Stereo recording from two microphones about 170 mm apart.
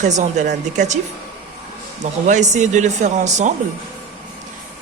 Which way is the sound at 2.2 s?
45° right (ahead or behind).